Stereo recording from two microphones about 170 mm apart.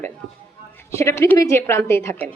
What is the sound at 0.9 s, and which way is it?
A woman's voice, 15° left (ahead or behind).